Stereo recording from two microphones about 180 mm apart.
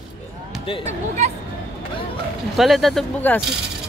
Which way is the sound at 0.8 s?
40° right (ahead or behind).